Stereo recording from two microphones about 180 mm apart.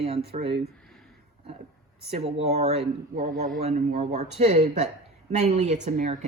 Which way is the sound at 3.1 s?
50° right (ahead or behind).